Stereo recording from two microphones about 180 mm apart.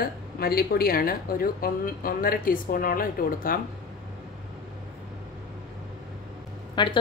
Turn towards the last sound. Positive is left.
turn(degrees=25)  # may be behind; listen again after turning